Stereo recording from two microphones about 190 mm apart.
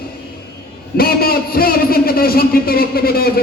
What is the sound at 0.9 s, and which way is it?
A man's voice, 50° left (ahead or behind).